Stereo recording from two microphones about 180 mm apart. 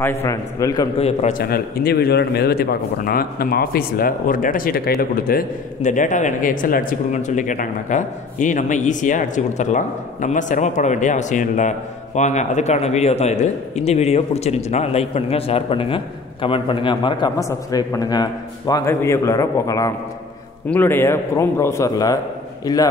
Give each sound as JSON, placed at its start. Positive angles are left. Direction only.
{"t": 0.0, "sound": "a man's voice", "side_deg": 15}
{"t": 0.9, "sound": "a man's voice", "side_deg": 35}
{"t": 1.4, "sound": "a man's voice", "side_deg": 60}